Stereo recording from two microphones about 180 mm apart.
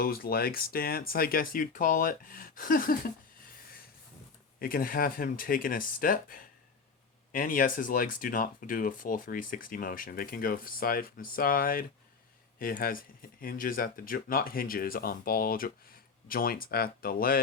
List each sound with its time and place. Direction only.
0.0 s speech: 55° left (ahead or behind)
4.6 s speech: 55° left (ahead or behind)